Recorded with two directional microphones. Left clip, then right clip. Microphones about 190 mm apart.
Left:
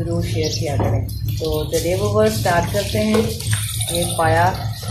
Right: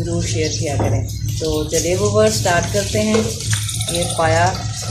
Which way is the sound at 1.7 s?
30° right (ahead or behind).